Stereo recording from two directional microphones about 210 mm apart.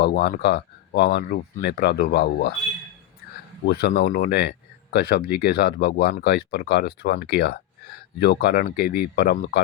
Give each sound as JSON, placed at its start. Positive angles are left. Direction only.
{"t": 0.0, "sound": "speech", "side_deg": 50}
{"t": 3.7, "sound": "speech", "side_deg": 50}